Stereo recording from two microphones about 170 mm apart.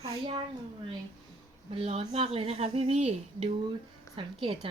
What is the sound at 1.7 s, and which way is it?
A woman's voice, 35° right (ahead or behind).